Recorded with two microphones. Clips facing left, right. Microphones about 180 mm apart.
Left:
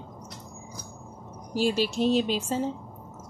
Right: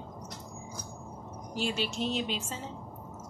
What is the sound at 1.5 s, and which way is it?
Speech, 40° left (ahead or behind).